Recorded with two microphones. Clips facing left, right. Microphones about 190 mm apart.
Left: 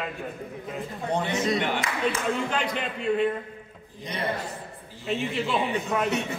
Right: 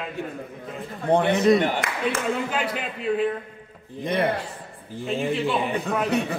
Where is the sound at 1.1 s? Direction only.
55° right (ahead or behind).